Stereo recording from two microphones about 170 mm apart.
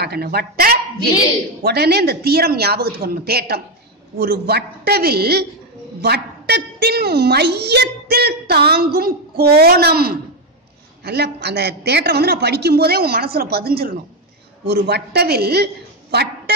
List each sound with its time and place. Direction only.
0.0 s a woman's voice: 70° right (ahead or behind)
14.7 s a woman's voice: 75° right (ahead or behind)